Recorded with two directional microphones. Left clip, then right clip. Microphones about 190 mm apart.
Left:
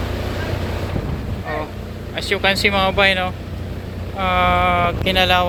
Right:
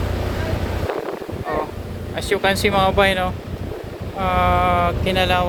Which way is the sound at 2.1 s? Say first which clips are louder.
Left 1 dB; 25° right (ahead or behind).